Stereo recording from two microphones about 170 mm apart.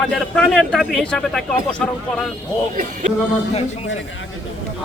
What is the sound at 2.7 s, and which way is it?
Music, 50° right (ahead or behind).